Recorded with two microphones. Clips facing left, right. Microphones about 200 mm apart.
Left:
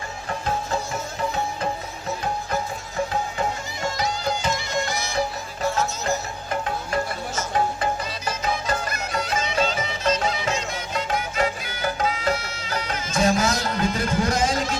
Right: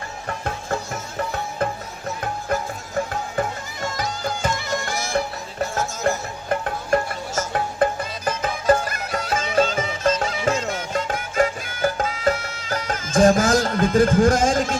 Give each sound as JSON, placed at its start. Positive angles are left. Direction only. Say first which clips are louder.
{"t": 3.9, "sound": "music", "louder": "left 1 dB", "side_deg": -50}